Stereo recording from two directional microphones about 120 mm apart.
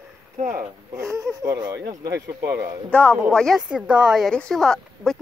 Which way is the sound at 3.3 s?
5° left (ahead or behind).